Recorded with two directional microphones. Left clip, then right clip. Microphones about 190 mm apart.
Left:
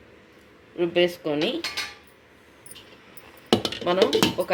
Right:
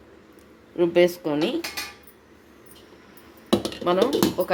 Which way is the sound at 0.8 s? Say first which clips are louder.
Right 3 dB; 15° right (ahead or behind).